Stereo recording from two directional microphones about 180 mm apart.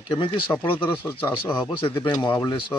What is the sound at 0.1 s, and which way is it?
Speech, 30° left (ahead or behind).